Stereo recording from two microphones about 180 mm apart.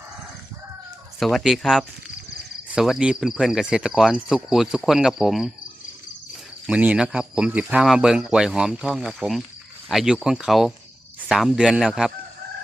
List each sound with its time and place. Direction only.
1.2 s speech: centre (ahead or behind)
6.7 s speech: 5° right (ahead or behind)